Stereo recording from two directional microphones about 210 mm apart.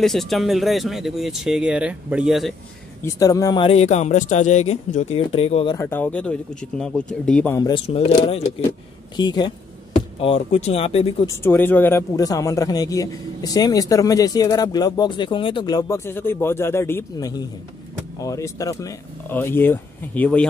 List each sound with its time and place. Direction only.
0.0 s speech: centre (ahead or behind)
3.0 s speech: 15° left (ahead or behind)
5.8 s speech: 10° left (ahead or behind)
7.5 s speech: 20° left (ahead or behind)
11.2 s speech: 10° left (ahead or behind)